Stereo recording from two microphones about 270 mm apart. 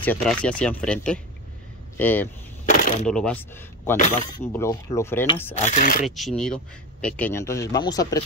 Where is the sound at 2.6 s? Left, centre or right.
Left.